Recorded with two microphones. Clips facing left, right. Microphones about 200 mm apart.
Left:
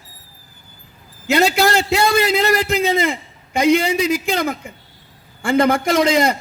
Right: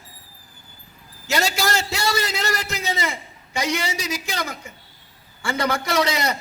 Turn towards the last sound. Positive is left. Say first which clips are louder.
# left 7 dB
turn(degrees=50)  # may be behind; listen again after turning